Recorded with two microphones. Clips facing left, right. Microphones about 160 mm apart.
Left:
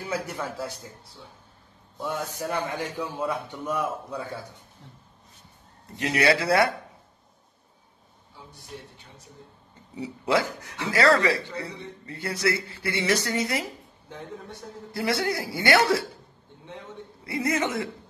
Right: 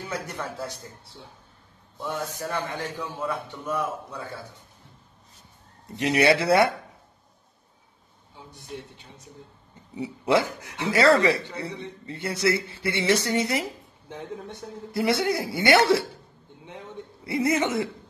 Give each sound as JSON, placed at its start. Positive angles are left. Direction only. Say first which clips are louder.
{"t": 0.1, "sound": "a man's voice", "louder": "left 3 dB", "side_deg": 5}
{"t": 2.0, "sound": "a man's voice", "louder": "even", "side_deg": 10}
{"t": 5.9, "sound": "speech", "louder": "right 2 dB", "side_deg": -20}
{"t": 9.9, "sound": "speech", "louder": "right 2 dB", "side_deg": -25}
{"t": 17.2, "sound": "speech", "louder": "right 3 dB", "side_deg": -25}